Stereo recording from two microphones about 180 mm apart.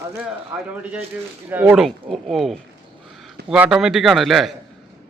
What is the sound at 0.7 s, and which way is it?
A man's voice, 10° right (ahead or behind).